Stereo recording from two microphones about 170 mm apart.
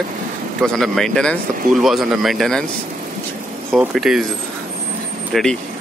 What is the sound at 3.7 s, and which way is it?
Speech, centre (ahead or behind).